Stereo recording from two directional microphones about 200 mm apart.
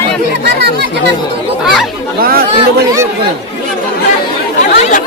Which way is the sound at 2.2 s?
50° right (ahead or behind).